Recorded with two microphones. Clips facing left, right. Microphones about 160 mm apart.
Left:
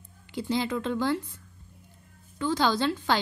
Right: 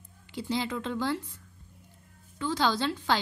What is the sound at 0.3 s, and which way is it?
Speech, 55° left (ahead or behind).